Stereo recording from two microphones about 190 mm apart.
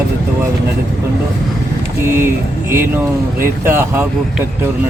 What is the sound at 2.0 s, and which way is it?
Speech, 15° right (ahead or behind).